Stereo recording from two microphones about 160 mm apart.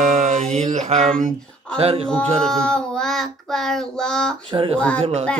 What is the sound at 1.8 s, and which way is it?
Speech, 35° right (ahead or behind).